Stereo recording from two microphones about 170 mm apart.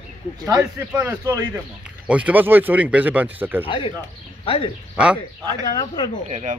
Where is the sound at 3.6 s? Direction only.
30° left (ahead or behind).